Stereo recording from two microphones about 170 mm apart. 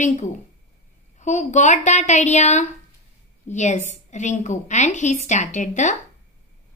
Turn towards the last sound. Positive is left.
turn(degrees=45)  # may be behind; listen again after turning